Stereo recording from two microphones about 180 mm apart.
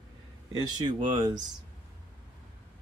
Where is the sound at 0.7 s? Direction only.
25° right (ahead or behind).